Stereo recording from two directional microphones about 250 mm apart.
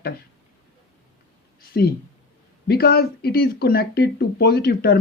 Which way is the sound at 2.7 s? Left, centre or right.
Left.